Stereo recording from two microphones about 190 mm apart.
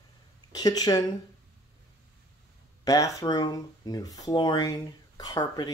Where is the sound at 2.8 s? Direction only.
20° left (ahead or behind).